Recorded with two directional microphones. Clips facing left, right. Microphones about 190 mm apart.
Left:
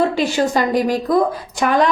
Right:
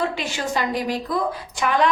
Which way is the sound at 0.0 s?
35° left (ahead or behind).